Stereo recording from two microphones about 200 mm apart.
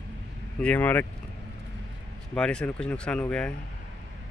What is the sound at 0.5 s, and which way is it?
Speech, 5° left (ahead or behind).